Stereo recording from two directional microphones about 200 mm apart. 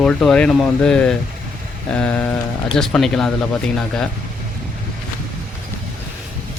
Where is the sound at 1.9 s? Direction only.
5° left (ahead or behind).